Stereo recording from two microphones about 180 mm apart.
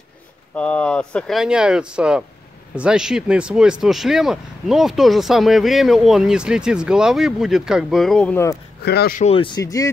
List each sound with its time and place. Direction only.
0.6 s speech: 5° left (ahead or behind)
8.8 s speech: 60° left (ahead or behind)
9.2 s speech: 30° left (ahead or behind)